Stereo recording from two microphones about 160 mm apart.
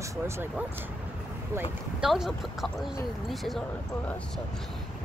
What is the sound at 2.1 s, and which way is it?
Speech, centre (ahead or behind).